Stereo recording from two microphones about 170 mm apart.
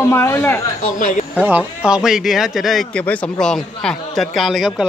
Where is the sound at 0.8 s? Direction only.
50° left (ahead or behind).